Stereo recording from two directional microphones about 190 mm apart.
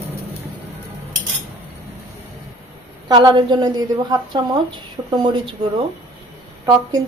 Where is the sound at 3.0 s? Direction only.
25° right (ahead or behind).